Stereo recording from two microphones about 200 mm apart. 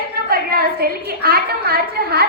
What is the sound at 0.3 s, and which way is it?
A woman's voice, 50° right (ahead or behind).